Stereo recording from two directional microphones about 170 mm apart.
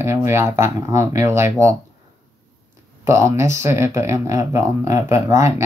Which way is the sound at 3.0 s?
15° right (ahead or behind).